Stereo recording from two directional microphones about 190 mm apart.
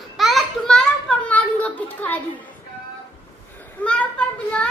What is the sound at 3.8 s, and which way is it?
Speech, 5° left (ahead or behind).